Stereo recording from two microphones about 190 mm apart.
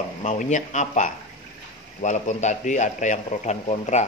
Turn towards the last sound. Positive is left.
turn(degrees=35)  # may be behind; listen again after turning